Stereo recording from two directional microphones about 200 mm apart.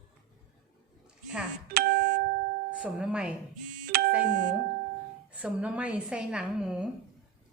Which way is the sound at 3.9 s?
50° right (ahead or behind).